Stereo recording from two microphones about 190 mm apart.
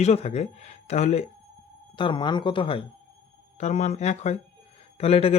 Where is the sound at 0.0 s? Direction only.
35° left (ahead or behind).